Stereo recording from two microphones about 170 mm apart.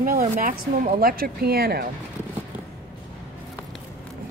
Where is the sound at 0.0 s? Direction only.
55° right (ahead or behind).